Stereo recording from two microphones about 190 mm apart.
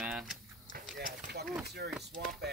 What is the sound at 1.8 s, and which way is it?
Speech, 55° right (ahead or behind).